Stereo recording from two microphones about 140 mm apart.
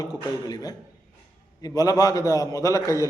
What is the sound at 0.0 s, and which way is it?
A man's voice, 25° left (ahead or behind).